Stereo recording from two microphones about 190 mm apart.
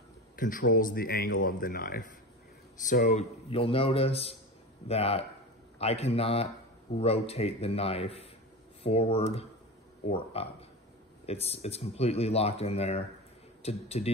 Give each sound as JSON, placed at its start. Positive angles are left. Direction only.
{"t": 0.4, "sound": "speech", "side_deg": 45}